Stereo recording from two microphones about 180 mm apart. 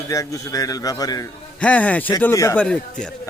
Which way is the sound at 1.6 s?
10° left (ahead or behind).